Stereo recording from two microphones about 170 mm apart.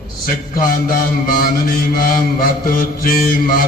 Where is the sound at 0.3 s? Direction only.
60° left (ahead or behind).